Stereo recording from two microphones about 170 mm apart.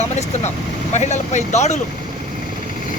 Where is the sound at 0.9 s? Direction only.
45° left (ahead or behind).